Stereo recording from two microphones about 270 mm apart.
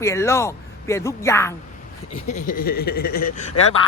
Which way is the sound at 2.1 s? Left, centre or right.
Left.